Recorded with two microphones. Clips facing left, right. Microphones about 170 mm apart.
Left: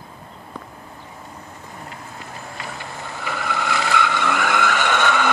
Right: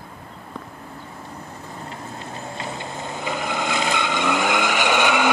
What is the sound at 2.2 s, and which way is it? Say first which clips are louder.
Vehicle: right 2 dB; 25° right (ahead or behind).